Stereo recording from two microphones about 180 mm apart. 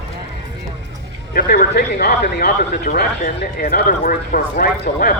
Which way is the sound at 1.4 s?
55° left (ahead or behind).